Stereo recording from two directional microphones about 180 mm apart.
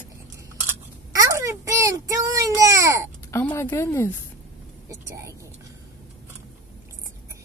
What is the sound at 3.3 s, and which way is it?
Speech, 15° left (ahead or behind).